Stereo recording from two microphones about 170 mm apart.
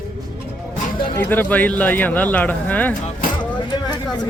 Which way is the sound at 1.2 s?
10° left (ahead or behind).